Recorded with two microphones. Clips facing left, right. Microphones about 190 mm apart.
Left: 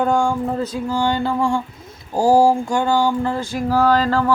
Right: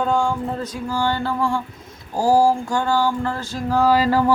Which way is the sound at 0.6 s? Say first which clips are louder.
Left 3 dB; 25° left (ahead or behind).